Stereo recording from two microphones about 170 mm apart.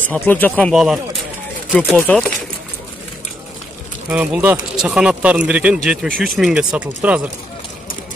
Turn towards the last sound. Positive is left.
turn(degrees=-5)  # may be behind; listen again after turning